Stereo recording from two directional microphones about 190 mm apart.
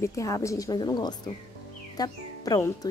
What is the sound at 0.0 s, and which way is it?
Speech, 15° left (ahead or behind).